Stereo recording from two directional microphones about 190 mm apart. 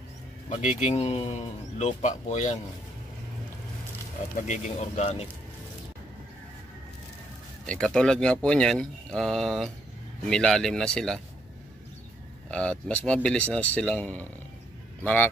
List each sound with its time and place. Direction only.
0.5 s speech: 40° left (ahead or behind)
4.4 s speech: 40° left (ahead or behind)
7.6 s speech: 5° left (ahead or behind)
12.4 s speech: 5° left (ahead or behind)